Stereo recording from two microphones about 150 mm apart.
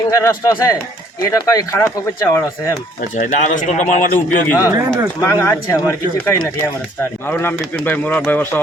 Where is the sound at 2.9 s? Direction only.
55° left (ahead or behind).